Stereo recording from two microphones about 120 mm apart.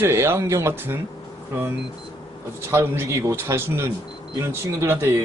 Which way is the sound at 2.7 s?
20° right (ahead or behind).